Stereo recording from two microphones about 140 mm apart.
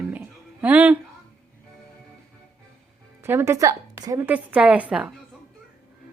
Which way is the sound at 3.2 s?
15° right (ahead or behind).